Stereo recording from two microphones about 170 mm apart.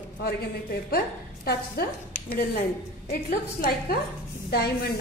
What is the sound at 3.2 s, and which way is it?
Speech, 55° left (ahead or behind).